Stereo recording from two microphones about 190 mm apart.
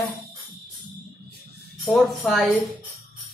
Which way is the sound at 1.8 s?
Centre (ahead or behind).